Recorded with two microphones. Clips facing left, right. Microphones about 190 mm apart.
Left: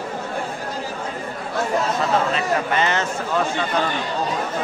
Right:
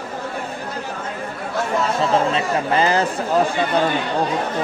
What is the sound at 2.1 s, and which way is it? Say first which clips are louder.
Speech: right 1 dB; 30° right (ahead or behind).